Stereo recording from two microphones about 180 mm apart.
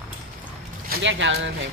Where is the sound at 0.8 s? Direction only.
75° right (ahead or behind); by 1.5 s 90° right.